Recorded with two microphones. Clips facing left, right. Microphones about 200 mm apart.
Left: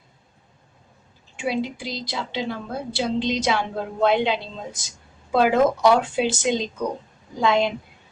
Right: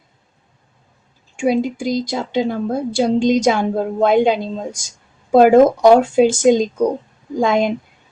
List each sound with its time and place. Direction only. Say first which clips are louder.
1.4 s a woman's voice: right 8 dB; 45° right (ahead or behind)